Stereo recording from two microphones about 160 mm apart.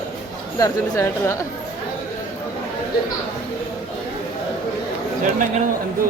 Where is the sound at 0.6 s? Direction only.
20° left (ahead or behind).